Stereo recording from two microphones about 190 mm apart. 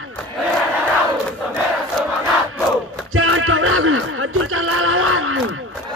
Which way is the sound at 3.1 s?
90° right.